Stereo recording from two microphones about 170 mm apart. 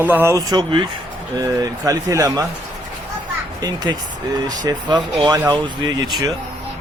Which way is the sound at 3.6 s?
25° right (ahead or behind).